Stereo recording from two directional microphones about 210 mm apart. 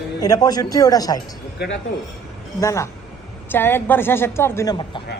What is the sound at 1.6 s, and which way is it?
Speech, 50° left (ahead or behind).